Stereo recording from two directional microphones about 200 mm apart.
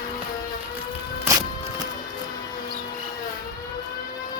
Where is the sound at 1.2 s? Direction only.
15° right (ahead or behind).